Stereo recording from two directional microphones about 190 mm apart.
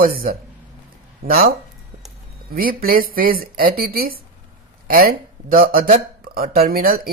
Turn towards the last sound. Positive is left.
turn(degrees=-50)  # may be behind; listen again after turning